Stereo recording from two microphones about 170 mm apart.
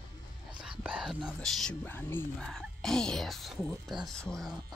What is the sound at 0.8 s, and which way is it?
Speech, 5° right (ahead or behind).